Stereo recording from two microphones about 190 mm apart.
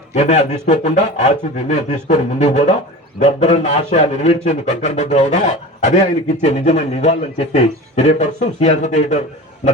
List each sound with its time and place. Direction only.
0.1 s a man's voice: 35° left (ahead or behind)